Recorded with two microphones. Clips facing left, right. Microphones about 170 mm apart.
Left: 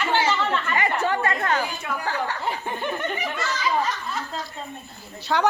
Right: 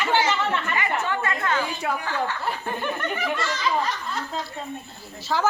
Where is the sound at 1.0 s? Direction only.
40° left (ahead or behind).